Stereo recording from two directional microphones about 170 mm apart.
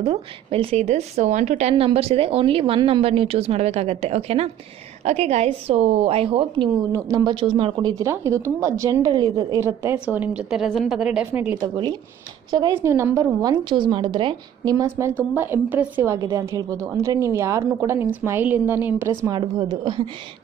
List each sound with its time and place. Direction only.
0.0 s a woman's voice: 35° right (ahead or behind)
6.9 s a woman's voice: 20° right (ahead or behind)
8.0 s a woman's voice: 15° right (ahead or behind)
11.6 s a woman's voice: 25° right (ahead or behind)
19.3 s a woman's voice: 25° right (ahead or behind)